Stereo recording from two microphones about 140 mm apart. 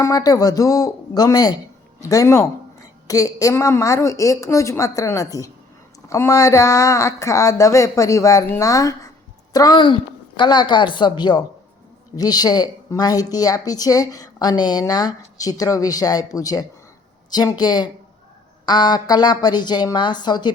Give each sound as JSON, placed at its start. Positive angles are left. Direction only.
{"t": 0.0, "sound": "a woman's voice", "side_deg": 25}